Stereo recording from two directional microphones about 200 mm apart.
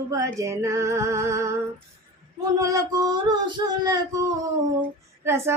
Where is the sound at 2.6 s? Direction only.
20° right (ahead or behind).